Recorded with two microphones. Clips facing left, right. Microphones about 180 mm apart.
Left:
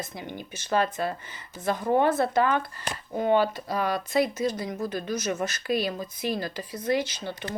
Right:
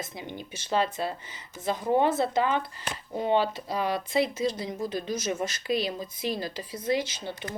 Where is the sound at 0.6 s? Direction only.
50° left (ahead or behind).